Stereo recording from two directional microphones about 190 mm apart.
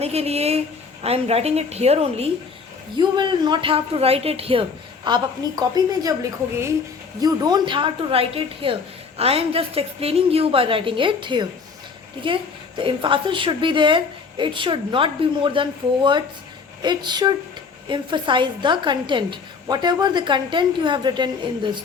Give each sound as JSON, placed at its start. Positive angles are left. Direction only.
{"t": 0.0, "sound": "a woman's voice", "side_deg": -35}
{"t": 7.2, "sound": "a woman's voice", "side_deg": -20}
{"t": 16.8, "sound": "a woman's voice", "side_deg": -25}